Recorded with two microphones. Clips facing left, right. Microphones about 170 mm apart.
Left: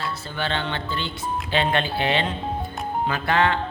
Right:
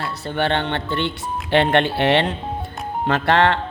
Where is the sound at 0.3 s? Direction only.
65° right (ahead or behind).